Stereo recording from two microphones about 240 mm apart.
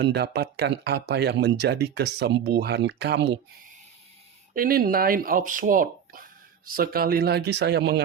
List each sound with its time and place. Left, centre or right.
0.0 s speech: right
4.5 s speech: right